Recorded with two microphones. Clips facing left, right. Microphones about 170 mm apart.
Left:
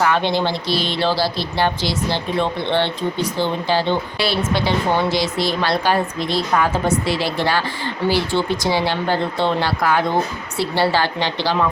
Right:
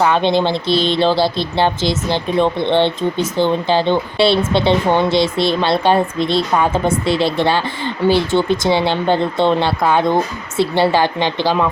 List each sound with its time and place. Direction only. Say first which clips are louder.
0.0 s speech: right 4 dB; 20° right (ahead or behind)